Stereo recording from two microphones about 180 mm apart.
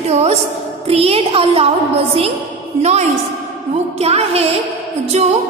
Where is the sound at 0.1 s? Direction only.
35° right (ahead or behind).